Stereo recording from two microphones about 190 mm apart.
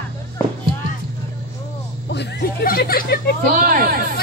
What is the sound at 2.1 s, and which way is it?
Speech, 60° left (ahead or behind).